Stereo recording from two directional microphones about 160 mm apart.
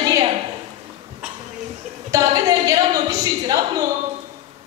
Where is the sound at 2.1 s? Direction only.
20° right (ahead or behind).